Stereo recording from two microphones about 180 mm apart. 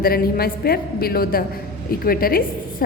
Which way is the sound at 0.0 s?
55° left (ahead or behind).